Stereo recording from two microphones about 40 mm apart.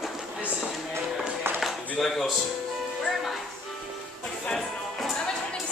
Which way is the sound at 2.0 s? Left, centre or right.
Centre.